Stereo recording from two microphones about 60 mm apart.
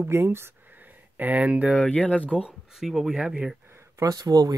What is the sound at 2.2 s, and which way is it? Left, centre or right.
Speech, centre.